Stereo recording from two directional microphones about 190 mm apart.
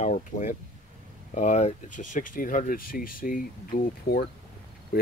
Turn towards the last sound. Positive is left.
turn(degrees=50)  # may be behind; listen again after turning